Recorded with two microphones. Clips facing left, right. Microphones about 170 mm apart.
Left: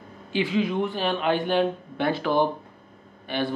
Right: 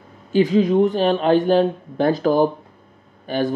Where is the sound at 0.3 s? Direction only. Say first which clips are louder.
Right 9 dB; 40° right (ahead or behind).